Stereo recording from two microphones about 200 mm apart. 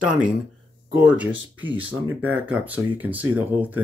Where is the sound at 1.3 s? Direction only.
75° right (ahead or behind).